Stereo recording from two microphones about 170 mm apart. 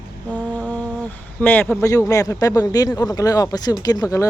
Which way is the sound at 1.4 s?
10° left (ahead or behind).